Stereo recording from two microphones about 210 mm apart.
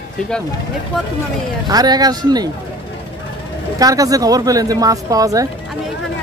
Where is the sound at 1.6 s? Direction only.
20° right (ahead or behind).